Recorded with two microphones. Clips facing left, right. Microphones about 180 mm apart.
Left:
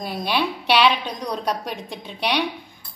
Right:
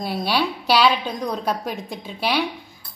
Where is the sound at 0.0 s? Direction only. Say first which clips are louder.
Right 1 dB; 10° right (ahead or behind).